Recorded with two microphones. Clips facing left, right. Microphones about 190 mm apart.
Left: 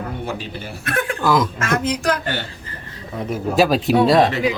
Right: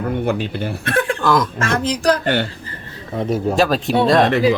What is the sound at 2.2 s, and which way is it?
Speech, 60° right (ahead or behind).